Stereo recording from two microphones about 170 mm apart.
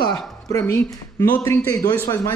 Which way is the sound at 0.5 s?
15° left (ahead or behind).